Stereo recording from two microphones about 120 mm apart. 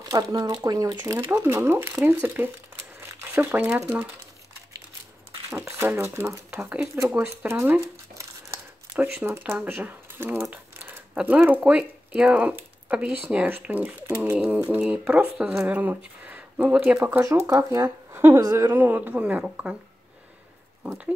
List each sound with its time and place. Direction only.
0.0 s speech: 30° right (ahead or behind)
1.4 s speech: 20° right (ahead or behind)
3.0 s crumpling: 20° right (ahead or behind)
5.8 s speech: 20° right (ahead or behind)
8.2 s crumpling: 20° right (ahead or behind)
9.2 s speech: 15° right (ahead or behind)
10.4 s crumpling: 15° right (ahead or behind)
11.1 s speech: 10° right (ahead or behind)
17.2 s speech: 25° right (ahead or behind); by 19.8 s 10° right (ahead or behind)
20.8 s speech: 10° right (ahead or behind)